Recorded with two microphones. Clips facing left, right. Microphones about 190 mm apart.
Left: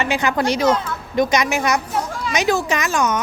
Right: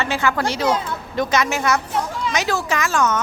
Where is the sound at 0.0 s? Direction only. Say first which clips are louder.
Left 2 dB; 15° left (ahead or behind).